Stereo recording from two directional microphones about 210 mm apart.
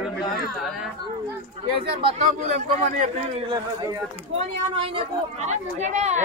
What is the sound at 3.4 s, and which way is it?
A woman's voice, 15° right (ahead or behind).